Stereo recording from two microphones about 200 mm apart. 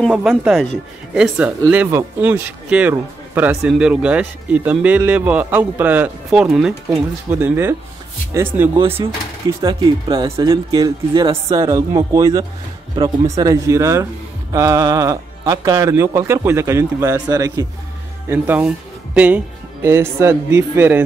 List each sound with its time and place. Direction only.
0.1 s speech: 5° right (ahead or behind)
8.7 s speech: 30° right (ahead or behind); by 21.0 s 10° right (ahead or behind)